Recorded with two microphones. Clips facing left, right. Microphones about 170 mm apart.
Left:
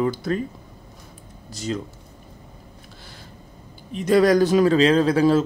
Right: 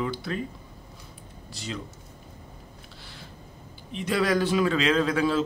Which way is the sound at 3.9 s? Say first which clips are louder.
Left 8 dB; 45° left (ahead or behind).